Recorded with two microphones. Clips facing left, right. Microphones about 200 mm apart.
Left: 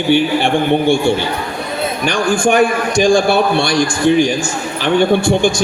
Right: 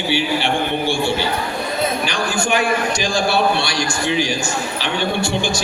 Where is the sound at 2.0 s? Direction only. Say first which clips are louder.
Left 7 dB; 50° left (ahead or behind).